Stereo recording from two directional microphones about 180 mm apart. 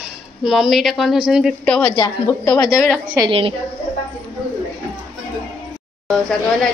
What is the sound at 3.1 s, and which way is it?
Speech, 25° right (ahead or behind).